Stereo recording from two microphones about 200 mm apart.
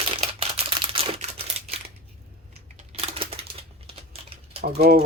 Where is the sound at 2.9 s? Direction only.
30° right (ahead or behind).